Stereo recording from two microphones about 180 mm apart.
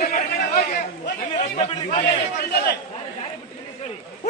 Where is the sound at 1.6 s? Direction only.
35° left (ahead or behind).